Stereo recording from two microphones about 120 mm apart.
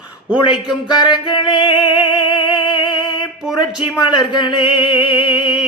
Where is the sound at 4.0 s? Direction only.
40° left (ahead or behind).